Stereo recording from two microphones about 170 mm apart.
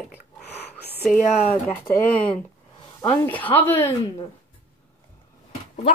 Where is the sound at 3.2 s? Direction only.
10° left (ahead or behind).